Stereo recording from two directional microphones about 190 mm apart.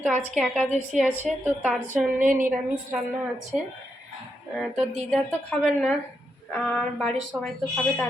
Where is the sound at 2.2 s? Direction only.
45° right (ahead or behind).